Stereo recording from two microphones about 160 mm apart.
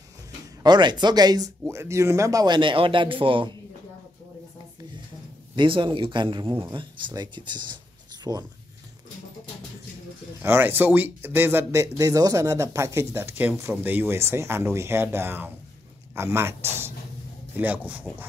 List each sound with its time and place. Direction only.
0.6 s speech: 25° right (ahead or behind)
5.6 s speech: 30° right (ahead or behind)
10.4 s speech: 15° right (ahead or behind)
17.6 s speech: 10° right (ahead or behind)